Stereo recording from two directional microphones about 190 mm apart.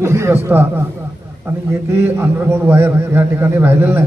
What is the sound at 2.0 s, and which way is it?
A man's voice, 10° right (ahead or behind).